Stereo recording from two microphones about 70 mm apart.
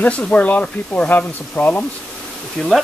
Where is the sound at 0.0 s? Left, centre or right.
Centre.